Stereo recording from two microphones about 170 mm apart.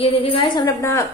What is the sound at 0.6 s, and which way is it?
Speech, 15° left (ahead or behind).